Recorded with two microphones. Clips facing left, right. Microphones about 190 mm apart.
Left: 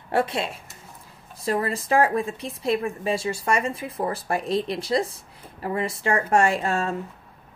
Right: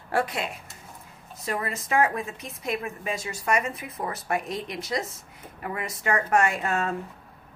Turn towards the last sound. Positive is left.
turn(degrees=30)  # may be behind; listen again after turning